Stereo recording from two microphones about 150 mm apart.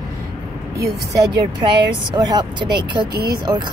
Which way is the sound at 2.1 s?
30° right (ahead or behind).